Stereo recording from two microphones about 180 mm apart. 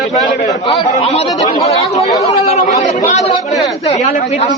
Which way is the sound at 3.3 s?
25° left (ahead or behind).